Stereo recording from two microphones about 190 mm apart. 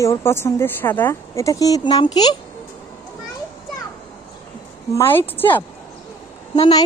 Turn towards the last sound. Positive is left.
turn(degrees=20)  # may be behind; listen again after turning